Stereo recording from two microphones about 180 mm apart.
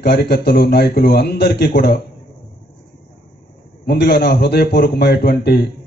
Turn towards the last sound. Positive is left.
turn(degrees=60)  # may be behind; listen again after turning